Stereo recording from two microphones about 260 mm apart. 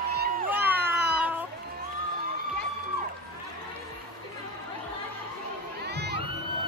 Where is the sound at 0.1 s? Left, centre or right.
Right.